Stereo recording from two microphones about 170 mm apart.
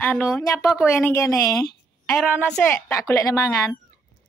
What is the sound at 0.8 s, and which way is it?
Speech, 15° left (ahead or behind).